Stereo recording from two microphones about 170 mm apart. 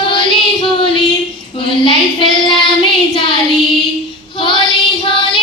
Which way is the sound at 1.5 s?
30° left (ahead or behind).